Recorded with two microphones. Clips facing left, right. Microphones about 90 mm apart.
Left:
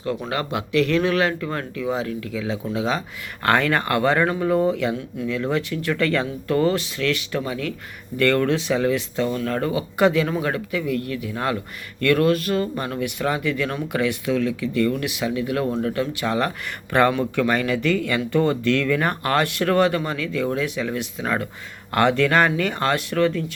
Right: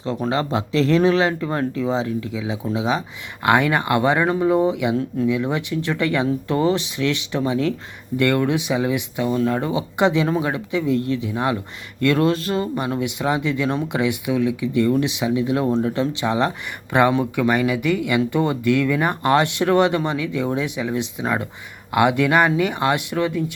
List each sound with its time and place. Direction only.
0.3 s speech: 25° right (ahead or behind)